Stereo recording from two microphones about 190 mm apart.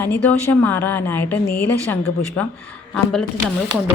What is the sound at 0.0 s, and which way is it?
A woman's voice, 10° left (ahead or behind).